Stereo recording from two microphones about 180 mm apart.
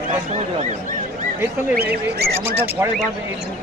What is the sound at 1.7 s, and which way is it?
Speech, 60° right (ahead or behind).